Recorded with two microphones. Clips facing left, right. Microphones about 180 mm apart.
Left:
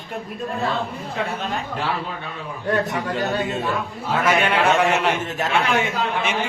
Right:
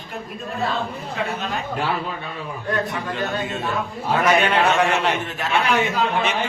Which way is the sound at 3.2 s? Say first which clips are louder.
Left 2 dB; 40° left (ahead or behind).